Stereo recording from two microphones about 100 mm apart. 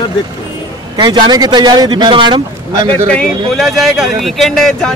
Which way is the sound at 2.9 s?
10° left (ahead or behind).